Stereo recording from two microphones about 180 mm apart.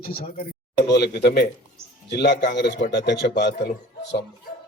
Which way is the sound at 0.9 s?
65° left (ahead or behind).